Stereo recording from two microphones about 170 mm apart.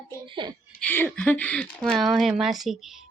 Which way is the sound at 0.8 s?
10° left (ahead or behind).